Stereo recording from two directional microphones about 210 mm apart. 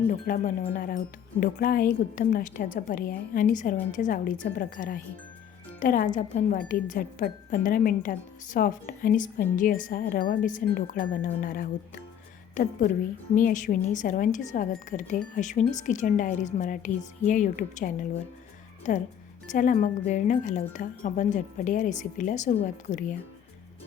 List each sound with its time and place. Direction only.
0.1 s a woman's voice: 40° left (ahead or behind)